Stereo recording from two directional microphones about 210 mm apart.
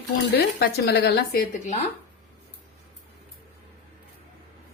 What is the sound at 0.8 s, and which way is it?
A woman's voice, 50° left (ahead or behind).